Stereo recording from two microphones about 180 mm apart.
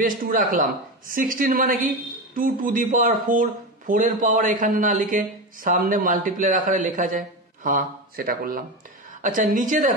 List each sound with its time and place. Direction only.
0.0 s speech: 50° right (ahead or behind)